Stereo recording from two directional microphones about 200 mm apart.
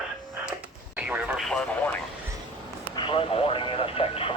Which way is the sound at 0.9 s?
5° right (ahead or behind).